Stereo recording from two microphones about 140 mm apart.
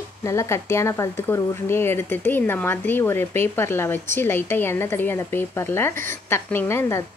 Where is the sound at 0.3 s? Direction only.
20° left (ahead or behind).